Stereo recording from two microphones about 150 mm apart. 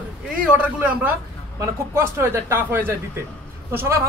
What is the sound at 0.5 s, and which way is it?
Speech, 10° right (ahead or behind).